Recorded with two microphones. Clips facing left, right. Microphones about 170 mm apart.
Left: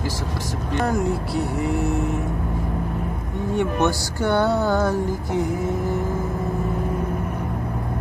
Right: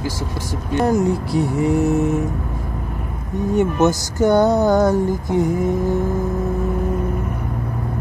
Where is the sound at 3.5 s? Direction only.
40° right (ahead or behind).